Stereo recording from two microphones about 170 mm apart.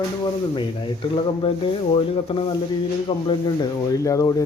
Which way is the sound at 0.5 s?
30° left (ahead or behind).